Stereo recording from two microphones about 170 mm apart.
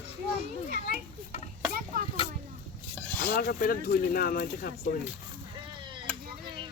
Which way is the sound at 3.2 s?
65° left (ahead or behind).